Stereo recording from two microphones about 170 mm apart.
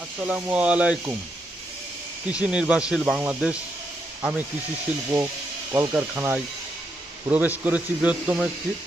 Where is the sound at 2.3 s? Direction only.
5° right (ahead or behind).